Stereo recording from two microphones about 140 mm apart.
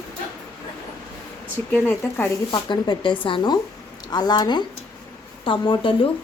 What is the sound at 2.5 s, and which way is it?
Speech, 35° left (ahead or behind).